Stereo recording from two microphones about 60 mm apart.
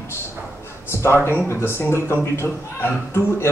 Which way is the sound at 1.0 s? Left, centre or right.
Left.